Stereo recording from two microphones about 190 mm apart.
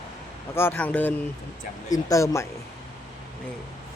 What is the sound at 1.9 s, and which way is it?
Speech, 20° left (ahead or behind).